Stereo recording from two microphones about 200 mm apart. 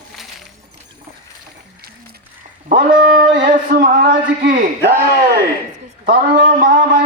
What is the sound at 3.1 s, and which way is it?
A man's voice, 40° right (ahead or behind).